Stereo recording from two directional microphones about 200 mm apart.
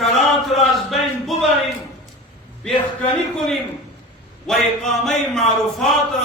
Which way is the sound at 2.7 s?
Centre (ahead or behind).